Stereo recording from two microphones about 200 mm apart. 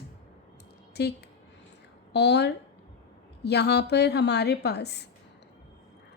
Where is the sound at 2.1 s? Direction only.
60° left (ahead or behind).